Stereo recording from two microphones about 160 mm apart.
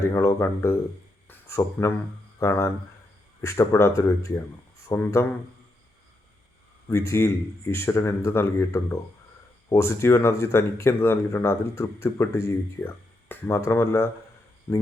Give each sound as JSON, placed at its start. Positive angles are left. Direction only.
{"t": 0.0, "sound": "speech", "side_deg": 15}
{"t": 1.3, "sound": "a sound", "side_deg": 15}
{"t": 2.4, "sound": "speech", "side_deg": 15}
{"t": 6.8, "sound": "speech", "side_deg": 15}